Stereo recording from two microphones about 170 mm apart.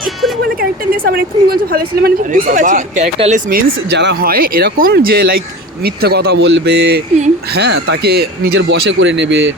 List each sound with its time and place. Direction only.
0.6 s speech: 60° right (ahead or behind); by 3.4 s 40° right (ahead or behind)
3.5 s speech: 75° right (ahead or behind)